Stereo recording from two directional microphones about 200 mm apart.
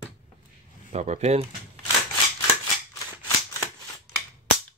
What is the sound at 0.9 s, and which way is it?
Speech, 35° right (ahead or behind).